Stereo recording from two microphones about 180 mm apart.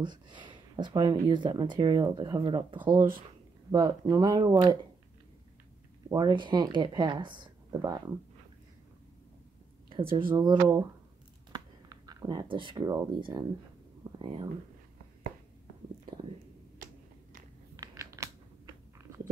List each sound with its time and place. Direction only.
0.0 s speech: 25° right (ahead or behind)
2.8 s speech: 10° right (ahead or behind)
6.0 s speech: 25° right (ahead or behind)
10.1 s speech: 25° right (ahead or behind)
16.7 s finger snapping: 50° right (ahead or behind)
17.7 s a sound: 15° right (ahead or behind)